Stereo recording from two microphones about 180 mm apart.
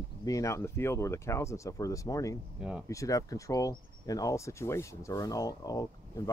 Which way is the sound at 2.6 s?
5° right (ahead or behind).